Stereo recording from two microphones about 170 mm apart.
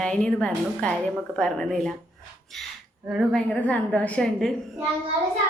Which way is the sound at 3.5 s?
10° left (ahead or behind).